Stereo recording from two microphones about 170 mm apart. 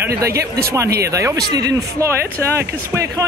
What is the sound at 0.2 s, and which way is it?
Speech, 15° right (ahead or behind).